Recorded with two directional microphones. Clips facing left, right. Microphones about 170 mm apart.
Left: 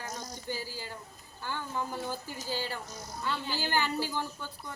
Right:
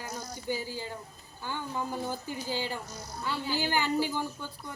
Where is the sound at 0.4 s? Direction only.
20° right (ahead or behind).